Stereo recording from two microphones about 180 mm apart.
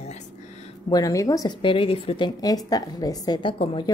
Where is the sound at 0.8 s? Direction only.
20° left (ahead or behind).